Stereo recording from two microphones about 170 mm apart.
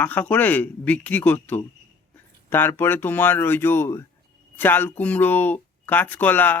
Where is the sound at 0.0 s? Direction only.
10° left (ahead or behind).